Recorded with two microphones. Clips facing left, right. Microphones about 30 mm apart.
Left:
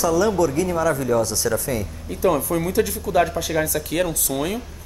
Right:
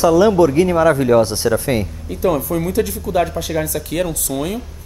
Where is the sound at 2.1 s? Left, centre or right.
Centre.